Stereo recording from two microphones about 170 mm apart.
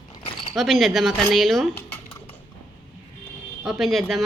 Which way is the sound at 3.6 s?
Centre (ahead or behind).